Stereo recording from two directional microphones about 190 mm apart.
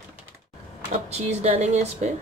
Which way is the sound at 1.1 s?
35° right (ahead or behind).